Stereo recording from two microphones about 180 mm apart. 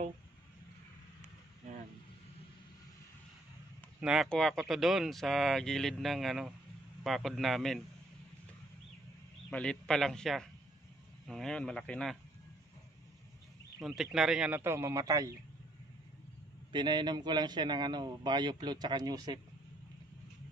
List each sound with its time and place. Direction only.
4.0 s speech: centre (ahead or behind)
9.5 s speech: 5° left (ahead or behind)
13.8 s speech: centre (ahead or behind); by 15.3 s 20° right (ahead or behind)
16.7 s a man's voice: 25° right (ahead or behind)